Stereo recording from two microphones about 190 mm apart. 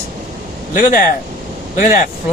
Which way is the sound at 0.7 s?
45° left (ahead or behind).